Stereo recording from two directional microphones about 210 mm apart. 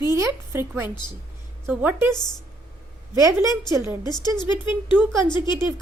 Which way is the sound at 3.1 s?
15° right (ahead or behind).